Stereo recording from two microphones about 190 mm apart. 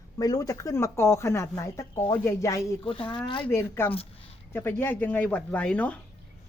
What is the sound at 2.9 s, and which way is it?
Speech, 25° left (ahead or behind).